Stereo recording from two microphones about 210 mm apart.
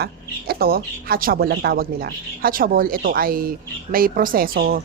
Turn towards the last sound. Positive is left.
turn(degrees=-45)  # may be behind; listen again after turning